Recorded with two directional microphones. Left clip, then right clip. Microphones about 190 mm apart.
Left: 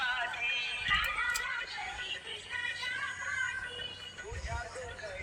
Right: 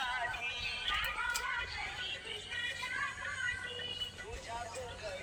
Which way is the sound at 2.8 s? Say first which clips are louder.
Left 2 dB; 45° left (ahead or behind).